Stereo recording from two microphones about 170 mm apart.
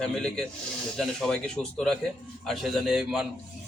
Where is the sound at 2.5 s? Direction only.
Centre (ahead or behind).